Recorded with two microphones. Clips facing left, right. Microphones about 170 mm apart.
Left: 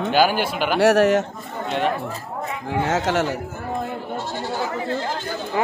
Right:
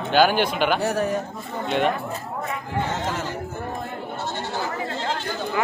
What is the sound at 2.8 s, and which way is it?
Speech, 80° left.